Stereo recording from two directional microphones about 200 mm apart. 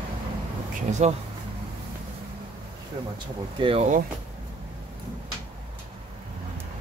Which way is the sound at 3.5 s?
25° right (ahead or behind).